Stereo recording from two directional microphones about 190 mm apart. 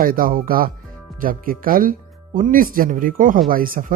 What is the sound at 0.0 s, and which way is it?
Speech, 50° right (ahead or behind).